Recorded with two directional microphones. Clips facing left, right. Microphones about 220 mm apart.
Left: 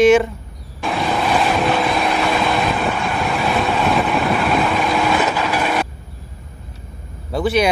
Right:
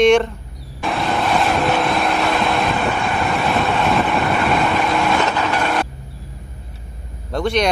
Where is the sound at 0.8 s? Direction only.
Centre (ahead or behind).